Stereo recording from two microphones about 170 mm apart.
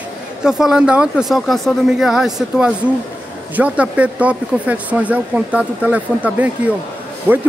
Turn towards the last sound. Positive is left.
turn(degrees=-10)  # may be behind; listen again after turning